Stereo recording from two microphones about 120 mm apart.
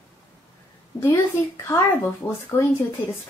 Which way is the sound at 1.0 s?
20° left (ahead or behind).